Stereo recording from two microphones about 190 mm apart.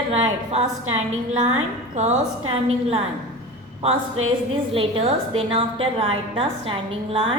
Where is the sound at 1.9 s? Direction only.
40° right (ahead or behind).